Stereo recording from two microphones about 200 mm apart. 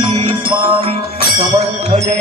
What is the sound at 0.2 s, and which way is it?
Music, 25° right (ahead or behind).